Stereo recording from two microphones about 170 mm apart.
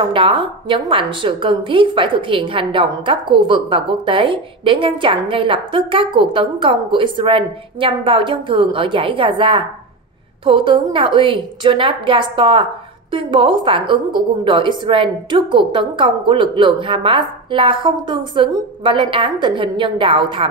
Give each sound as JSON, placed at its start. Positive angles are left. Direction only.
{"t": 0.1, "sound": "a woman's voice", "side_deg": -30}